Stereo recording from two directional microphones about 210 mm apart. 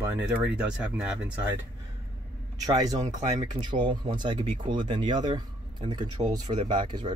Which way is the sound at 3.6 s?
25° right (ahead or behind).